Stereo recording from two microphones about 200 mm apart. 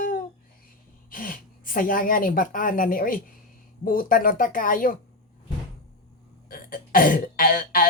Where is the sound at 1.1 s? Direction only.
45° left (ahead or behind).